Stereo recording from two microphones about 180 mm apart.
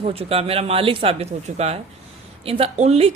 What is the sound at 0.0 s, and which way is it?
Speech, 35° right (ahead or behind).